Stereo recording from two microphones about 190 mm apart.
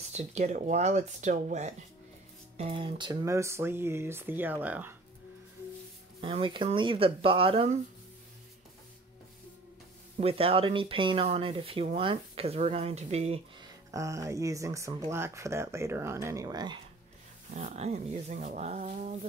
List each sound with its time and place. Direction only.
0.1 s speech: 35° right (ahead or behind); by 4.9 s 10° right (ahead or behind)
6.2 s speech: 30° right (ahead or behind)
10.2 s speech: 30° right (ahead or behind)
13.9 s speech: 15° right (ahead or behind)
17.6 s speech: 35° right (ahead or behind)